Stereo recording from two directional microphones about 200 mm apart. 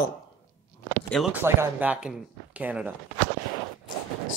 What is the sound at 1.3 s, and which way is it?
Speech, 10° right (ahead or behind).